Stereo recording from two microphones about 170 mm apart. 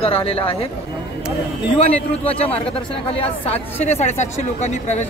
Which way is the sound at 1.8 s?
35° left (ahead or behind).